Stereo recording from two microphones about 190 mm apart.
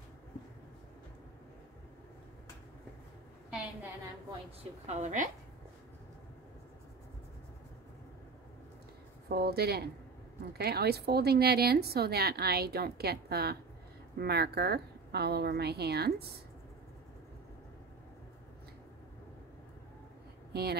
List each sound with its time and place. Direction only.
4.8 s a woman's voice: 40° right (ahead or behind)
9.3 s a woman's voice: 55° right (ahead or behind)
20.5 s a woman's voice: 60° right (ahead or behind)